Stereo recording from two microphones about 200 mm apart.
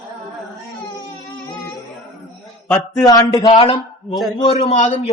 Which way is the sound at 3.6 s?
25° left (ahead or behind).